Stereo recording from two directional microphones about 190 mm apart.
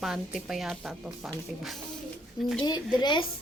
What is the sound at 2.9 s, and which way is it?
Speech, 25° left (ahead or behind).